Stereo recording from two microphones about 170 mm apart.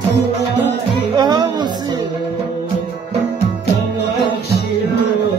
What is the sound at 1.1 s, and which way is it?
Music, 25° right (ahead or behind).